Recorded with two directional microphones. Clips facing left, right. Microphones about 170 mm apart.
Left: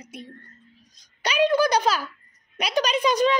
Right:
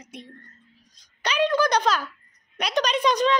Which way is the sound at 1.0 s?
10° left (ahead or behind).